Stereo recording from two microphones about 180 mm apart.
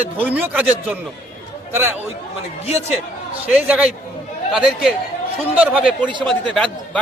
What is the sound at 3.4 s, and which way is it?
A man's voice, 5° right (ahead or behind).